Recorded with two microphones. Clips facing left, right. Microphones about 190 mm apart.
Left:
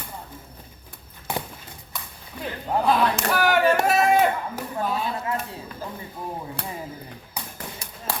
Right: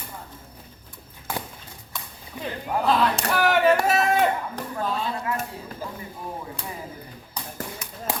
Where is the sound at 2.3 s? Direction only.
15° right (ahead or behind).